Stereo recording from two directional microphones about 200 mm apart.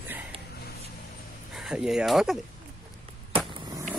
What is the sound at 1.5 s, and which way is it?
Speech, centre (ahead or behind).